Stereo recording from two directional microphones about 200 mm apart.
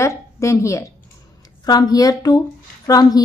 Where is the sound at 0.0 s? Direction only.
15° left (ahead or behind).